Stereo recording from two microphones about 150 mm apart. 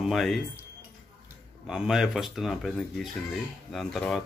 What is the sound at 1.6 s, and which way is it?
Speech, 5° right (ahead or behind).